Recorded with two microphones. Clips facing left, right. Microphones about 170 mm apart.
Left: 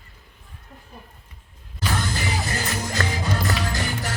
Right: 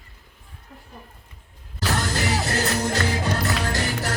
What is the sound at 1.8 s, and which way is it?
Music, 75° right (ahead or behind).